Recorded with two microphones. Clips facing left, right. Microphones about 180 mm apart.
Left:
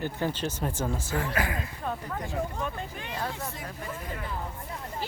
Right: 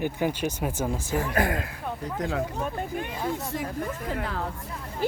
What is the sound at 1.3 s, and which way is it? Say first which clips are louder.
Speech: right 5 dB; 55° right (ahead or behind).